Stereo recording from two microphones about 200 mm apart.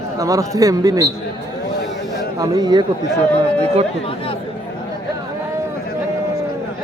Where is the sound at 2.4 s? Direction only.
20° right (ahead or behind).